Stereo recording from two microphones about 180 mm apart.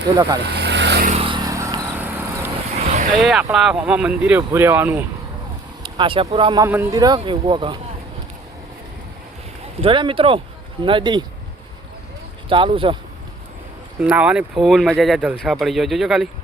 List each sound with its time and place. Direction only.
0.4 s vehicle: 70° right (ahead or behind)
1.1 s vehicle: 30° right (ahead or behind); by 2.5 s 10° right (ahead or behind)
2.8 s vehicle: 40° right (ahead or behind)
3.2 s speech: centre (ahead or behind)
5.8 s speech: 30° right (ahead or behind)
9.8 s speech: 30° right (ahead or behind)
12.5 s speech: 30° right (ahead or behind)
14.0 s speech: 5° right (ahead or behind)